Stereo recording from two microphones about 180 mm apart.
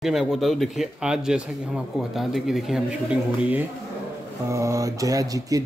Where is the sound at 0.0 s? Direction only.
Centre (ahead or behind).